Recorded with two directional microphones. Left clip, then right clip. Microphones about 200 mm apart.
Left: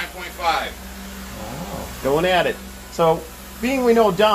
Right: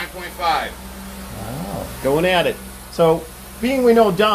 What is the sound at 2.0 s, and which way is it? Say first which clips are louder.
Speech: right 1 dB; 5° right (ahead or behind).